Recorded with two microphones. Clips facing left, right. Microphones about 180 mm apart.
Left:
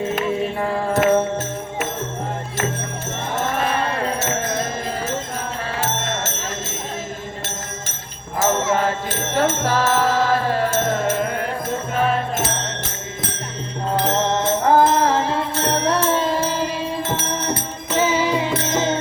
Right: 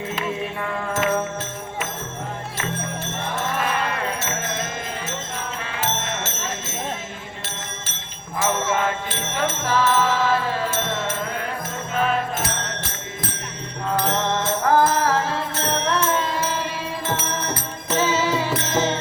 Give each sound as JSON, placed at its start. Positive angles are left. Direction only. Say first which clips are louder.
{"t": 0.6, "sound": "music", "louder": "left 6 dB", "side_deg": 30}
{"t": 3.6, "sound": "music", "louder": "left 3 dB", "side_deg": 30}
{"t": 5.7, "sound": "music", "louder": "left 2 dB", "side_deg": 45}
{"t": 8.4, "sound": "music", "louder": "left 3 dB", "side_deg": 40}
{"t": 14.0, "sound": "music", "louder": "left 4 dB", "side_deg": 25}
{"t": 18.0, "sound": "music", "louder": "left 3 dB", "side_deg": 15}